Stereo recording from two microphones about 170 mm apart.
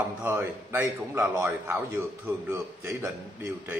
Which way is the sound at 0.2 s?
10° right (ahead or behind).